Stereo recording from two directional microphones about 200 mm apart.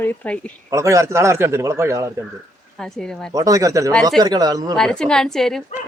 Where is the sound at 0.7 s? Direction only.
15° right (ahead or behind).